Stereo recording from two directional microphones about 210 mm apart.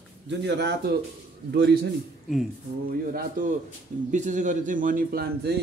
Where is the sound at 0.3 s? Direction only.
55° right (ahead or behind).